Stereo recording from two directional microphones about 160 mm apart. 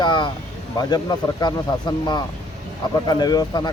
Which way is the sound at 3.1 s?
25° left (ahead or behind).